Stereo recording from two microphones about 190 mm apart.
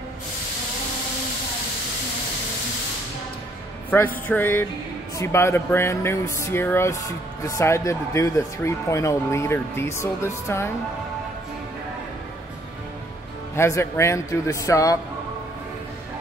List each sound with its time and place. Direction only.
3.9 s speech: 10° left (ahead or behind)
13.6 s speech: 15° left (ahead or behind)